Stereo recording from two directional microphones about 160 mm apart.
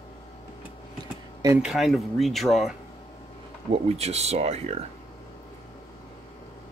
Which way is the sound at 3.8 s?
40° right (ahead or behind).